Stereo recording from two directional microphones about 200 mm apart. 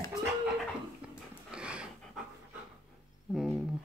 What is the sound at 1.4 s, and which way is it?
Pant, 5° right (ahead or behind).